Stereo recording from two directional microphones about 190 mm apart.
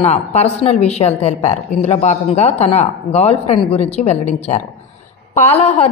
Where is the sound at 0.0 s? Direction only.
35° left (ahead or behind).